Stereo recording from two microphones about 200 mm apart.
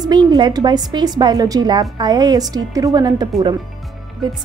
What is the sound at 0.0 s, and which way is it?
Speech, 20° right (ahead or behind).